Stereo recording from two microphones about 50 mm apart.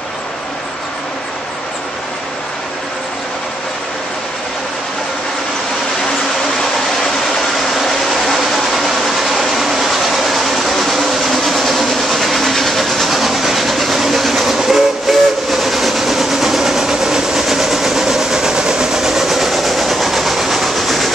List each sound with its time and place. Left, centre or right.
7.7 s train: centre